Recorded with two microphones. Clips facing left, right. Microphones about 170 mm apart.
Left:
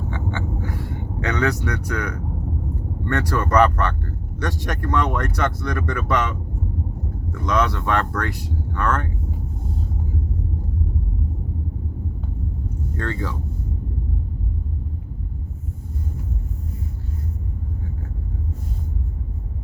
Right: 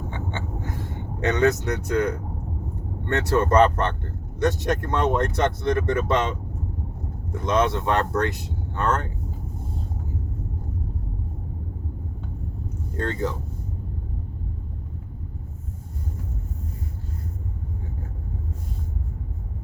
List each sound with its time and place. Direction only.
0.1 s a sound: 20° right (ahead or behind)
1.2 s speech: 20° right (ahead or behind)
7.4 s speech: 25° right (ahead or behind)
13.0 s speech: 20° right (ahead or behind)